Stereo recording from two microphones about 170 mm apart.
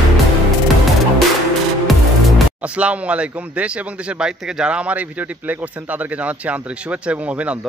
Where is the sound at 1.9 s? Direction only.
Centre (ahead or behind).